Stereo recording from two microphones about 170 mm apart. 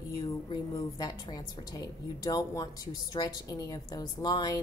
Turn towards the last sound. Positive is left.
turn(degrees=25)  # may be behind; listen again after turning